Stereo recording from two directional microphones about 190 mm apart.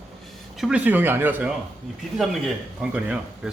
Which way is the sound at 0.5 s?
5° right (ahead or behind).